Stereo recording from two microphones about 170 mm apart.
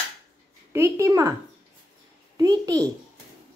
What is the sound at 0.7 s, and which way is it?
Speech, 15° right (ahead or behind).